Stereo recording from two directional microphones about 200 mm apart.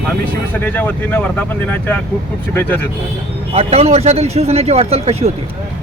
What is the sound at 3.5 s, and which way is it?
A man's voice, 30° right (ahead or behind).